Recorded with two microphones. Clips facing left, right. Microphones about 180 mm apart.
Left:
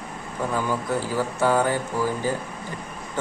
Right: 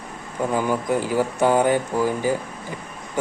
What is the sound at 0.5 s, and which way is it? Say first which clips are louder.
Speech: right 4 dB; 15° right (ahead or behind).